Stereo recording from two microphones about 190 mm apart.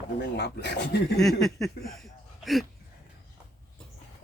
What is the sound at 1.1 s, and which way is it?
Speech, centre (ahead or behind).